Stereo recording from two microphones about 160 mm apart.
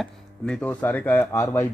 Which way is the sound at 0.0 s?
5° left (ahead or behind).